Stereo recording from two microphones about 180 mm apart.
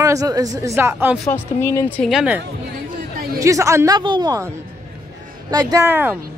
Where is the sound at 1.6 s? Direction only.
15° left (ahead or behind).